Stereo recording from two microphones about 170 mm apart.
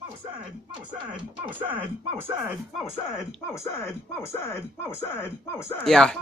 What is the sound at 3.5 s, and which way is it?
Speech, 15° left (ahead or behind).